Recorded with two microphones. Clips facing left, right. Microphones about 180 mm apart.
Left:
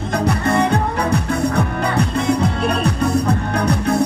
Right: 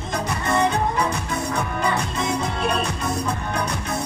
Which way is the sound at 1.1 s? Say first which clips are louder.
Left 7 dB; 60° left (ahead or behind).